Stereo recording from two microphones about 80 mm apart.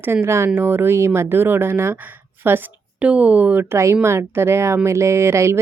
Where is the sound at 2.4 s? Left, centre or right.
Right.